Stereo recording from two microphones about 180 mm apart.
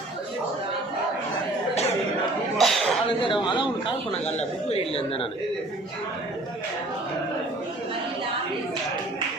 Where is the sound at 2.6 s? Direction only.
Centre (ahead or behind).